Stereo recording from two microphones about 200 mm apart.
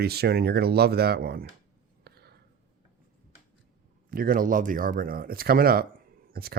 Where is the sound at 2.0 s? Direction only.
55° right (ahead or behind).